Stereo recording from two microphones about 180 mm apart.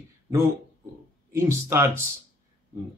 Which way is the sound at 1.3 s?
15° right (ahead or behind).